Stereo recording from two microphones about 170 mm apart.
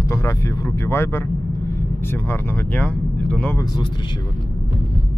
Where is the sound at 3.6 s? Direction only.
20° left (ahead or behind).